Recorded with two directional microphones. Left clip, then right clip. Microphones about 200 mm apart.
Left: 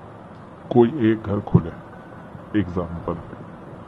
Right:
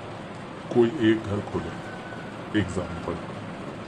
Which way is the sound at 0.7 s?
20° left (ahead or behind).